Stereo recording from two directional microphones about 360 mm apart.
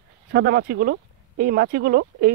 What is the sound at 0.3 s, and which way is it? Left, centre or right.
Speech, right.